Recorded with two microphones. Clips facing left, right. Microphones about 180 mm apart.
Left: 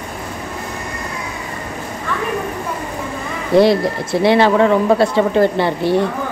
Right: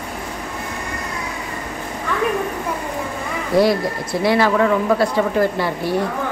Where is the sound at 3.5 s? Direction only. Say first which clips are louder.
Left 4 dB; 25° left (ahead or behind).